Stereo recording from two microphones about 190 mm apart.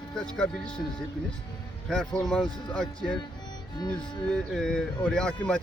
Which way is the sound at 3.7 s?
25° left (ahead or behind).